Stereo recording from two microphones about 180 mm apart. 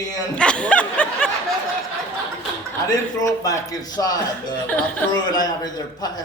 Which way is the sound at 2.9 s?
20° left (ahead or behind).